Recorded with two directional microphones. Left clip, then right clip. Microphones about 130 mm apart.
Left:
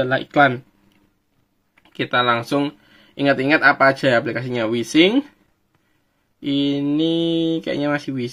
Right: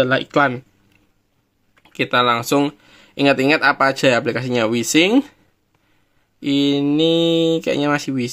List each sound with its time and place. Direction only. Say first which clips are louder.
0.0 s speech: even; 30° right (ahead or behind)
1.9 s speech: right 2 dB; 20° right (ahead or behind)
6.4 s speech: right 3 dB; 30° right (ahead or behind)